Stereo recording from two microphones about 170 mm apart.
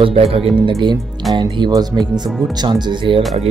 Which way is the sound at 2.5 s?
25° right (ahead or behind).